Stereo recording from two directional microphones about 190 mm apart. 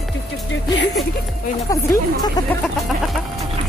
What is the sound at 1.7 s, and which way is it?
Speech, 20° left (ahead or behind).